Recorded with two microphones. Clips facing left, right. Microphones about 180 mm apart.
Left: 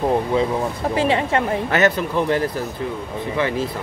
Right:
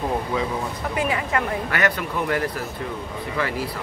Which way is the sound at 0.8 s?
30° left (ahead or behind).